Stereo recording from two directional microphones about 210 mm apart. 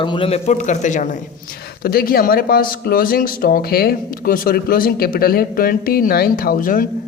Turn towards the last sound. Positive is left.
turn(degrees=40)  # may be behind; listen again after turning